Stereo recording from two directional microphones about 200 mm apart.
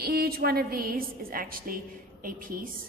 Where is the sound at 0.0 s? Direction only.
50° right (ahead or behind).